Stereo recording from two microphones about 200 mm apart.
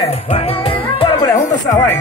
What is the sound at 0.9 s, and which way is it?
Music, 20° left (ahead or behind).